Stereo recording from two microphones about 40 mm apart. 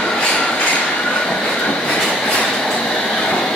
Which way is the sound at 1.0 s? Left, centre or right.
Centre.